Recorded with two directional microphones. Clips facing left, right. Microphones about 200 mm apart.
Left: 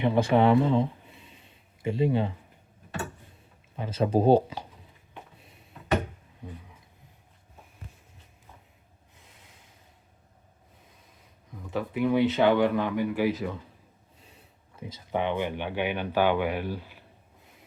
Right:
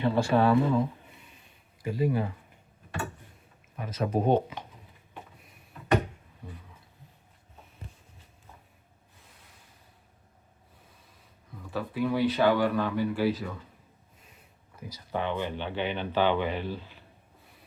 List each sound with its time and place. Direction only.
0.0 s speech: 20° left (ahead or behind)
3.8 s speech: 30° left (ahead or behind)
11.6 s speech: 20° left (ahead or behind)
14.8 s speech: 25° left (ahead or behind)